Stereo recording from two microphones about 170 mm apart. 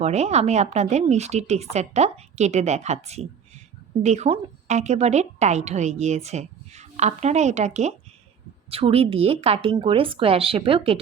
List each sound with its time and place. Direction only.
0.0 s a woman's voice: 40° right (ahead or behind)